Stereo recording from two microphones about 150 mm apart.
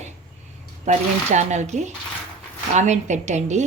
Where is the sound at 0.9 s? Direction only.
50° right (ahead or behind).